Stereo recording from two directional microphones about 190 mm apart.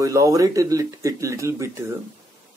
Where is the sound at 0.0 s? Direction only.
15° right (ahead or behind).